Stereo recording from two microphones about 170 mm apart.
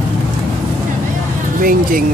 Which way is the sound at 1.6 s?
55° right (ahead or behind).